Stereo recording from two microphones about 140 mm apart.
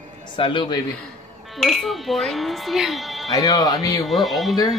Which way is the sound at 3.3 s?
25° left (ahead or behind).